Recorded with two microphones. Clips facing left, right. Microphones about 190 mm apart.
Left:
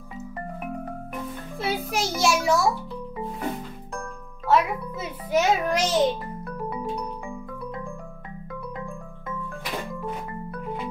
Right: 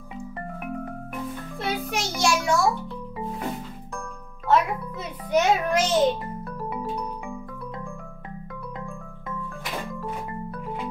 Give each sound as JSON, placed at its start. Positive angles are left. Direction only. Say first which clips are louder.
{"t": 1.6, "sound": "a child's voice", "louder": "left 2 dB", "side_deg": 0}
{"t": 4.5, "sound": "a child's voice", "louder": "even", "side_deg": 5}